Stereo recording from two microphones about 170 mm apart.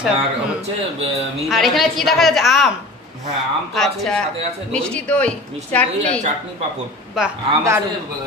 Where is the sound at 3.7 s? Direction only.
Centre (ahead or behind).